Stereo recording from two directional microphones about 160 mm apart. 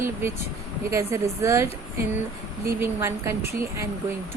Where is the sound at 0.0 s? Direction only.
15° right (ahead or behind).